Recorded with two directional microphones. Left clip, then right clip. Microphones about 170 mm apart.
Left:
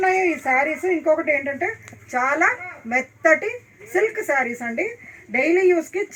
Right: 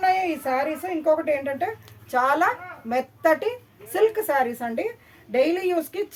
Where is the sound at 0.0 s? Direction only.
15° right (ahead or behind).